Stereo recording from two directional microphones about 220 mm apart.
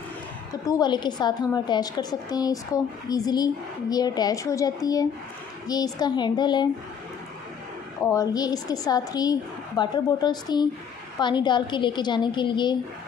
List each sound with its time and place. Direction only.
0.7 s a woman's voice: 20° left (ahead or behind)
8.0 s a woman's voice: 15° left (ahead or behind)